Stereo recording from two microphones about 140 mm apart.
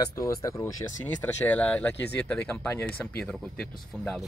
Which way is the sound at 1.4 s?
10° left (ahead or behind).